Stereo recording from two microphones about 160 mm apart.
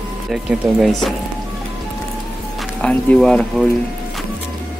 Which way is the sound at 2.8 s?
5° left (ahead or behind).